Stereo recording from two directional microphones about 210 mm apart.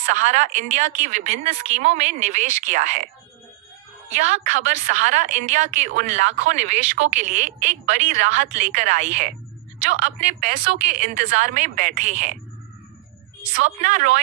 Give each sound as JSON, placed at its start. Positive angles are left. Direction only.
{"t": 0.1, "sound": "a woman's voice", "side_deg": -35}
{"t": 4.1, "sound": "a woman's voice", "side_deg": -35}
{"t": 13.7, "sound": "a woman's voice", "side_deg": -40}